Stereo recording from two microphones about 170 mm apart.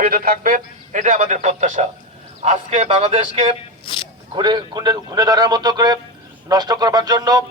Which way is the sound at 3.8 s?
30° left (ahead or behind).